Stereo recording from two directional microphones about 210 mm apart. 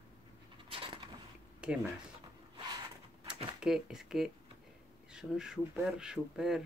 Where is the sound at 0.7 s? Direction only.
25° right (ahead or behind).